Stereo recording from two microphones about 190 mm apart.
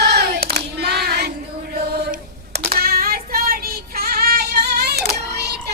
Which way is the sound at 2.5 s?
55° right (ahead or behind).